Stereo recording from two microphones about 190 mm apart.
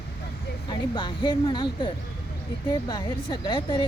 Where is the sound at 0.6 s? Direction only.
25° left (ahead or behind).